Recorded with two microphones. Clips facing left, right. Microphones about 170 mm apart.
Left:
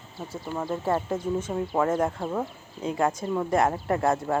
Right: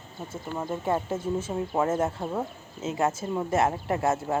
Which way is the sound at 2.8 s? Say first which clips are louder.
Left 1 dB; 25° right (ahead or behind).